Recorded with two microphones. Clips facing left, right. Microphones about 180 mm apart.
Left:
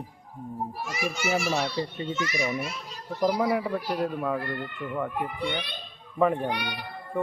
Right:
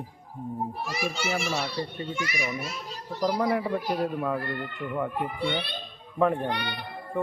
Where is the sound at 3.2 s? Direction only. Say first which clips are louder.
Left 1 dB; 5° left (ahead or behind).